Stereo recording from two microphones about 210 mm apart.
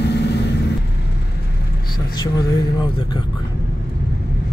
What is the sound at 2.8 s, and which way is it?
Speech, 20° left (ahead or behind).